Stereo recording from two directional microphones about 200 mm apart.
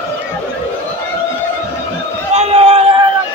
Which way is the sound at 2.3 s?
30° right (ahead or behind).